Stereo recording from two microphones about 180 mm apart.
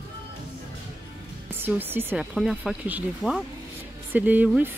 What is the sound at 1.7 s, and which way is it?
Speech, 10° right (ahead or behind).